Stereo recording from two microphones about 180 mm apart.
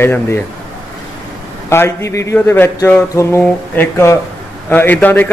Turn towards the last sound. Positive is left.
turn(degrees=10)  # may be behind; listen again after turning